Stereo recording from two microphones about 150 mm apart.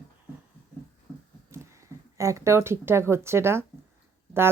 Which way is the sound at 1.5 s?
20° right (ahead or behind).